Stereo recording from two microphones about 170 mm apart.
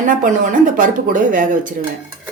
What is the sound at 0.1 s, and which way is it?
Speech, 50° right (ahead or behind).